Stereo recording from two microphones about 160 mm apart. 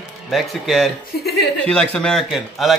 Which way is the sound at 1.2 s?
90° left.